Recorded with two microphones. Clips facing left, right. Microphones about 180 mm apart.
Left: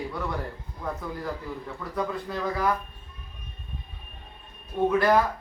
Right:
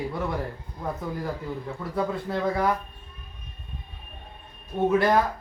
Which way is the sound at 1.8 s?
25° right (ahead or behind).